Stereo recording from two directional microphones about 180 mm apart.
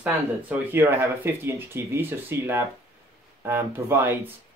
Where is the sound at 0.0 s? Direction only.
10° right (ahead or behind).